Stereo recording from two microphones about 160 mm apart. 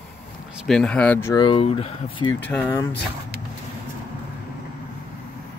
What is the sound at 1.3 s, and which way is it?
Speech, 30° left (ahead or behind).